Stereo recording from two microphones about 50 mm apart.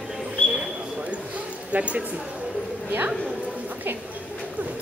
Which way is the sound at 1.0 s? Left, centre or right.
Right.